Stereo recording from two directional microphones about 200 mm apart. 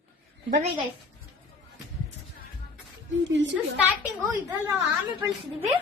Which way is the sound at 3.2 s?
65° right (ahead or behind).